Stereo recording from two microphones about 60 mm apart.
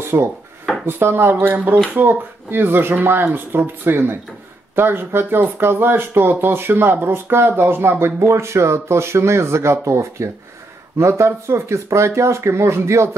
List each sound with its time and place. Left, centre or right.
0.1 s speech: right